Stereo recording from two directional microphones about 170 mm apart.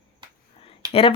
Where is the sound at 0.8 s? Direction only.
25° right (ahead or behind).